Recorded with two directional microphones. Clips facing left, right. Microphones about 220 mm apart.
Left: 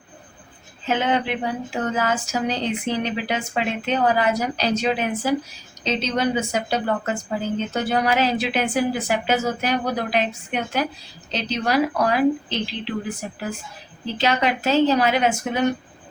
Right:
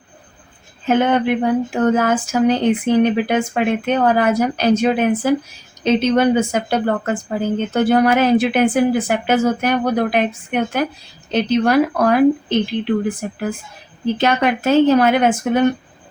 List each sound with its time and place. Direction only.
0.9 s a woman's voice: 50° right (ahead or behind)